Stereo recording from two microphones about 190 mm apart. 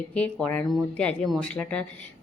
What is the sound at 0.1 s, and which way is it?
A woman's voice, 5° left (ahead or behind).